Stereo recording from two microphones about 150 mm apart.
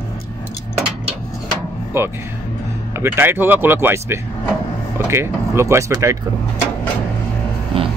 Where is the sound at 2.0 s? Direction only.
15° right (ahead or behind).